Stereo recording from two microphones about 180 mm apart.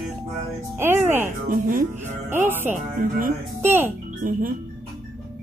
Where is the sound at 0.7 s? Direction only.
15° right (ahead or behind).